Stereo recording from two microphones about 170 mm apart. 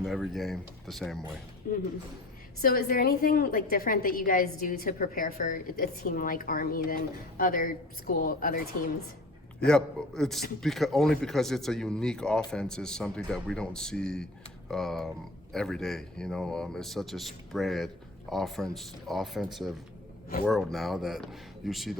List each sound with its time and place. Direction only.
0.0 s speech: centre (ahead or behind)
2.6 s a woman's voice: 60° left (ahead or behind)
9.6 s speech: 5° left (ahead or behind)